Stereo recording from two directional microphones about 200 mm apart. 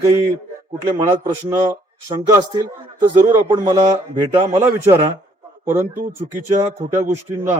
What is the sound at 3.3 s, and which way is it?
Speech, 15° right (ahead or behind).